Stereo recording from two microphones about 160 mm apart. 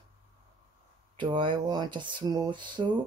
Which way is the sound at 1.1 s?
30° right (ahead or behind).